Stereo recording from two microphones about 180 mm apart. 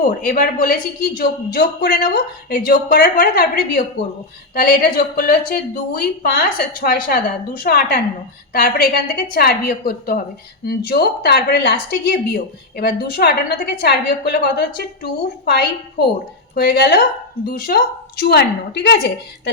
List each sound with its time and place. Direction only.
0.0 s a woman's voice: 50° left (ahead or behind); by 17.0 s 65° left (ahead or behind)
17.4 s a woman's voice: 55° left (ahead or behind)